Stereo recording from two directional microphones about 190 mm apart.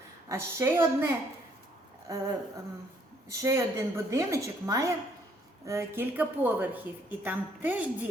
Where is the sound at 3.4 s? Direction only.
15° right (ahead or behind).